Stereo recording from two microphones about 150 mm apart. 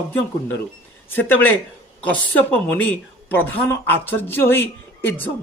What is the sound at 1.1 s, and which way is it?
Speech, 15° left (ahead or behind).